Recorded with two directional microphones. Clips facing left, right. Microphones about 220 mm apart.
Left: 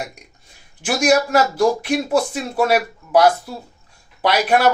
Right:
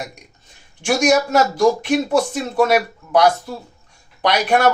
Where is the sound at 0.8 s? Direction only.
5° left (ahead or behind).